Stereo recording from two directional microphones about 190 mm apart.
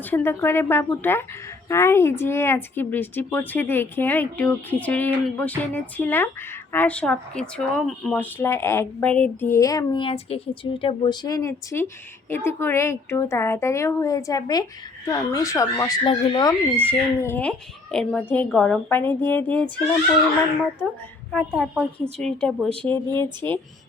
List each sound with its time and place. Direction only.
0.1 s speech: 10° left (ahead or behind)
16.7 s speech: 10° left (ahead or behind)
21.3 s speech: centre (ahead or behind)